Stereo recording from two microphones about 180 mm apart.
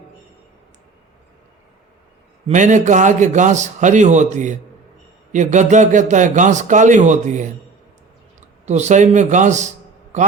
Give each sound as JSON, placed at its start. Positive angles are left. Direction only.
{"t": 2.5, "sound": "a man's voice", "side_deg": -40}
{"t": 8.6, "sound": "a man's voice", "side_deg": -40}